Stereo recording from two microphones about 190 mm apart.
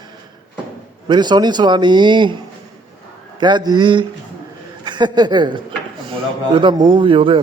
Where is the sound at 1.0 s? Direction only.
25° right (ahead or behind).